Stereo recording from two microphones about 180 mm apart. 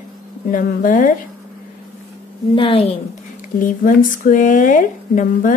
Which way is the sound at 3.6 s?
50° left (ahead or behind).